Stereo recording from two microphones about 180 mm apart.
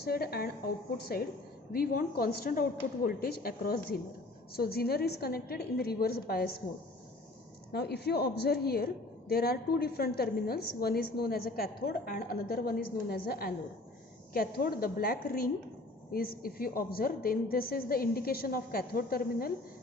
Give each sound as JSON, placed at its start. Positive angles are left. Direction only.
{"t": 0.0, "sound": "a woman's voice", "side_deg": 60}
{"t": 1.7, "sound": "a woman's voice", "side_deg": 55}
{"t": 7.7, "sound": "a woman's voice", "side_deg": 65}